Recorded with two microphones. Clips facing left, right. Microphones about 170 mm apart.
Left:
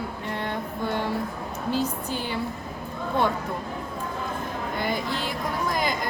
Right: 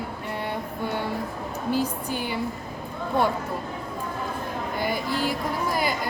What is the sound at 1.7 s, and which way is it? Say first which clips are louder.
Speech: right 1 dB; 10° right (ahead or behind).